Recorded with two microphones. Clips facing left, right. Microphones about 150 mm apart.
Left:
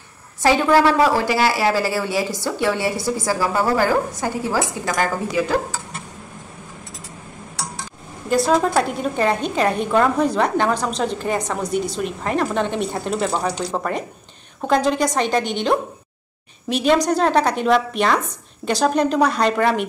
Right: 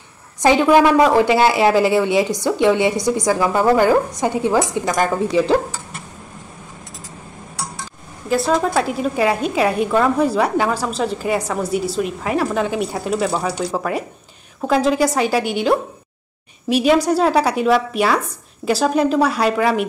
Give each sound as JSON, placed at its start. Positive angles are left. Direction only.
{"t": 0.4, "sound": "speech", "side_deg": -15}
{"t": 8.3, "sound": "a woman's voice", "side_deg": 0}